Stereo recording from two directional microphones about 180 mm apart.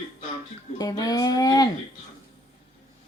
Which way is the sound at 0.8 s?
20° left (ahead or behind).